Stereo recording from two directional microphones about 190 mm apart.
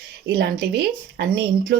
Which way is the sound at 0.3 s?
60° right (ahead or behind).